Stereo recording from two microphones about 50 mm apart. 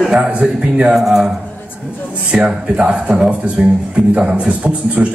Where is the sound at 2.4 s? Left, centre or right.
Centre.